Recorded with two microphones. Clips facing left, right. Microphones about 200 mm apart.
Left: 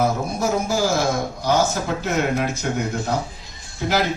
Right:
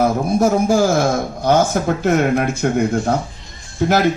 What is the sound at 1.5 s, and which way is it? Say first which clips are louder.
A man's voice: right 5 dB; 55° right (ahead or behind).